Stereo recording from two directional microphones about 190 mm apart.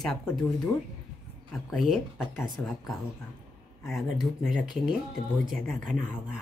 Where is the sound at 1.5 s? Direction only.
Centre (ahead or behind).